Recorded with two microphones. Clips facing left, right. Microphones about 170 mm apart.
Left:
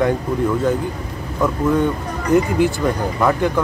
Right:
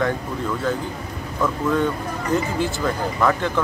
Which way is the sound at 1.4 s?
20° left (ahead or behind).